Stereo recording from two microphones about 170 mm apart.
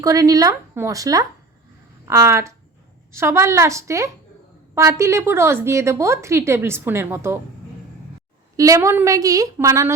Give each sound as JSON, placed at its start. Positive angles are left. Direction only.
{"t": 0.0, "sound": "a woman's voice", "side_deg": -20}
{"t": 8.5, "sound": "a woman's voice", "side_deg": -20}